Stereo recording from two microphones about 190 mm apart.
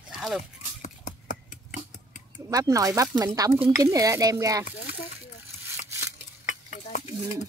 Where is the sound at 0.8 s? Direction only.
40° left (ahead or behind).